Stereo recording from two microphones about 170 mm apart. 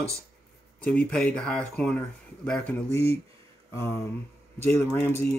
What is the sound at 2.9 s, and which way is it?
Speech, 35° right (ahead or behind).